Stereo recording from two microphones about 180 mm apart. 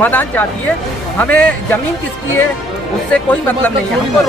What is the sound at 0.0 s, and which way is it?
A man's voice, 10° left (ahead or behind).